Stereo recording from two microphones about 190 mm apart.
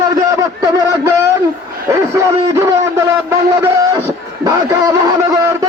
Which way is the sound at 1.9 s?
15° right (ahead or behind).